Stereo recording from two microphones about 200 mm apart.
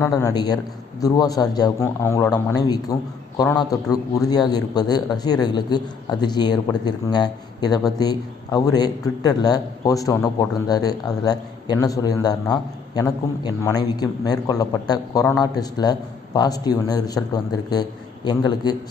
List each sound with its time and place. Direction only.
0.0 s speech: 15° left (ahead or behind)